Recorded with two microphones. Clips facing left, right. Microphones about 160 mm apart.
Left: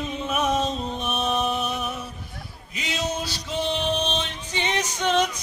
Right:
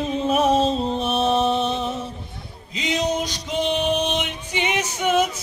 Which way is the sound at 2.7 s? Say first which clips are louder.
Right 6 dB; 20° right (ahead or behind).